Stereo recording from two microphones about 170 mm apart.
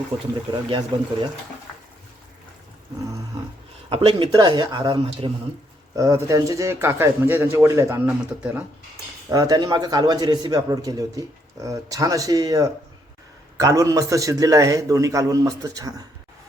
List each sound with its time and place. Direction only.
0.1 s a man's voice: 35° right (ahead or behind)
3.8 s a man's voice: 35° right (ahead or behind); by 8.1 s 15° right (ahead or behind)
8.2 s speech: 5° right (ahead or behind)
9.3 s a man's voice: 20° right (ahead or behind)